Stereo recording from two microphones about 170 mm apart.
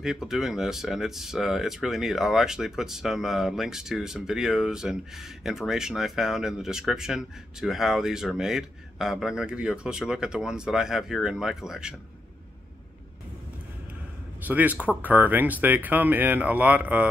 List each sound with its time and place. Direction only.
0.0 s speech: 5° right (ahead or behind)
14.4 s speech: 10° right (ahead or behind)